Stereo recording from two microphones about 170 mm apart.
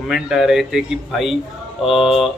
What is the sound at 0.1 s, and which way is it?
A man's voice, 5° right (ahead or behind).